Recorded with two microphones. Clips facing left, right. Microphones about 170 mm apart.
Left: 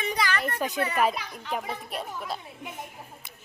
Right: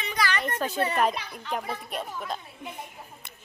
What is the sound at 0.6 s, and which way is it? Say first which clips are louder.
A child's voice: even; 10° left (ahead or behind).